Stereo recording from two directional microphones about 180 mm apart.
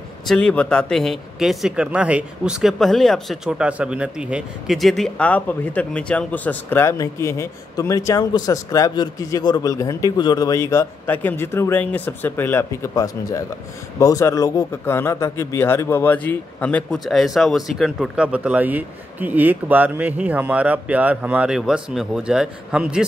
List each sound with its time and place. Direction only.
0.3 s a man's voice: 5° left (ahead or behind)